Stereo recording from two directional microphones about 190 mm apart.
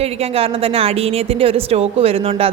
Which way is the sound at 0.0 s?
30° right (ahead or behind).